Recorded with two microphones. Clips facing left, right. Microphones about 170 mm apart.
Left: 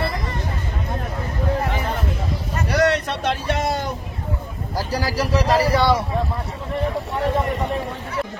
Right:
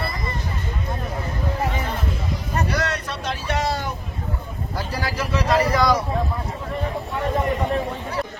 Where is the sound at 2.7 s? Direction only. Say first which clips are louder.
Left 7 dB; 65° left (ahead or behind).